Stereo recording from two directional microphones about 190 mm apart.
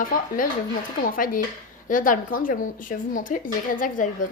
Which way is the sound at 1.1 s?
45° left (ahead or behind).